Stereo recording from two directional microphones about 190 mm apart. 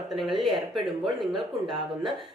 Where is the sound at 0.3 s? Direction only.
Centre (ahead or behind).